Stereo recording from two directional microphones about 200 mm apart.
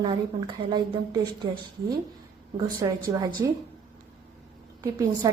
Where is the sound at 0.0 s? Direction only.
25° right (ahead or behind).